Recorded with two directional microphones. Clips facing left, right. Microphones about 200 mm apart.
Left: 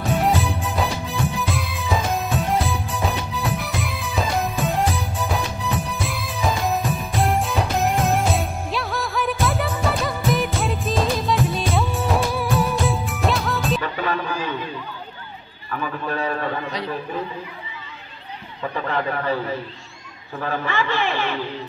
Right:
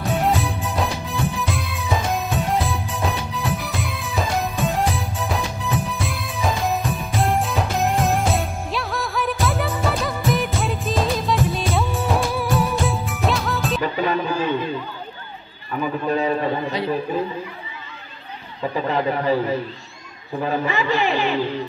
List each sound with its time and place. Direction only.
0.2 s music: centre (ahead or behind)
14.0 s a man's voice: 20° right (ahead or behind)
15.7 s a man's voice: 20° right (ahead or behind)
18.6 s speech: 15° right (ahead or behind)